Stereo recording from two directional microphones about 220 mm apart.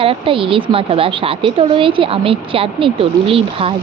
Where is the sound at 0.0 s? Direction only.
25° right (ahead or behind).